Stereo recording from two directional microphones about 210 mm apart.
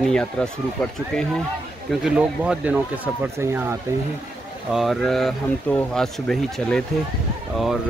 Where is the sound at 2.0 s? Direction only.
5° right (ahead or behind).